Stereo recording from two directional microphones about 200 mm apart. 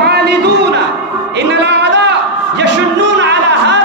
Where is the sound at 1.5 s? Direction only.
60° right (ahead or behind).